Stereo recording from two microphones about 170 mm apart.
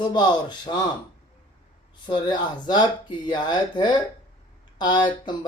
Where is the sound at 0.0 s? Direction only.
25° left (ahead or behind).